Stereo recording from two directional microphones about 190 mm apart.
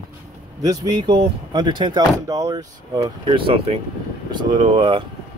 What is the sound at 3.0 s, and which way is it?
Speech, 30° right (ahead or behind).